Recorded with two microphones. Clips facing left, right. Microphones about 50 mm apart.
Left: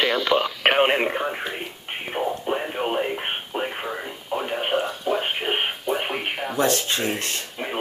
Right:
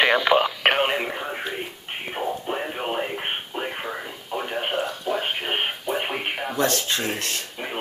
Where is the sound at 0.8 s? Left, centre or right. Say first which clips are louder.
Left 4 dB; left.